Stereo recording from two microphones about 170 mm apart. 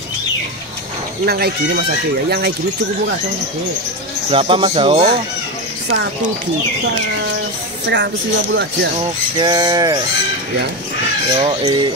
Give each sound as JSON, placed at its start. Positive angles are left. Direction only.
{"t": 1.2, "sound": "speech", "side_deg": -70}
{"t": 4.3, "sound": "speech", "side_deg": -35}
{"t": 5.9, "sound": "speech", "side_deg": -90}
{"t": 9.0, "sound": "bird", "side_deg": -25}
{"t": 11.3, "sound": "bird", "side_deg": -30}